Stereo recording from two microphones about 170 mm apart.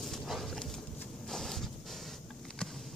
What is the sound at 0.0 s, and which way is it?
Dog, centre (ahead or behind).